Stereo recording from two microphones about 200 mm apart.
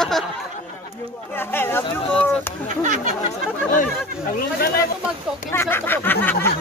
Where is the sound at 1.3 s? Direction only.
10° left (ahead or behind).